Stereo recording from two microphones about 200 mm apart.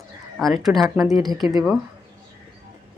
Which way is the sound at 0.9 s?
15° right (ahead or behind).